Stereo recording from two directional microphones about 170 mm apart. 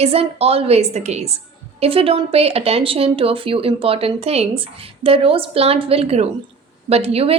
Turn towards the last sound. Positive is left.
turn(degrees=-35)  # may be behind; listen again after turning